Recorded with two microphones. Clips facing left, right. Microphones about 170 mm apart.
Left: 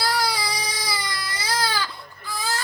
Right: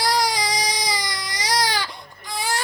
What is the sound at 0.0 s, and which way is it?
Baby cry, 20° right (ahead or behind).